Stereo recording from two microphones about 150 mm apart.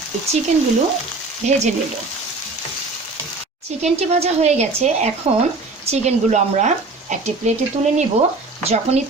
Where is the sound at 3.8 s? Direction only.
45° right (ahead or behind).